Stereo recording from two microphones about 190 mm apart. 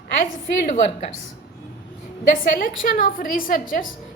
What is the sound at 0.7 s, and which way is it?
Speech, 40° left (ahead or behind).